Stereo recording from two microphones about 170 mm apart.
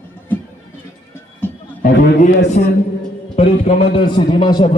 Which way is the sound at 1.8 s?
60° left (ahead or behind).